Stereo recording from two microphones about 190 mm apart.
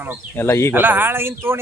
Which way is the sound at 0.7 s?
10° right (ahead or behind).